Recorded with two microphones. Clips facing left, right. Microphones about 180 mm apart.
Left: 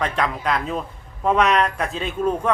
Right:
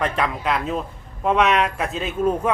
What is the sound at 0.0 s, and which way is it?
A man's voice, 5° right (ahead or behind).